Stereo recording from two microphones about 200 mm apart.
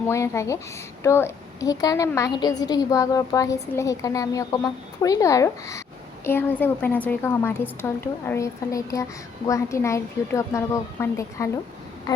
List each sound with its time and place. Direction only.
0.1 s a woman's voice: 15° left (ahead or behind)